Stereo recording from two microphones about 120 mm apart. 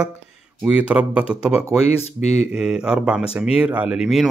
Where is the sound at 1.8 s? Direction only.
65° left (ahead or behind).